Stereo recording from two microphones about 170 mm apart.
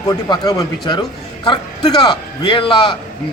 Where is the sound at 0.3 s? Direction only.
25° left (ahead or behind).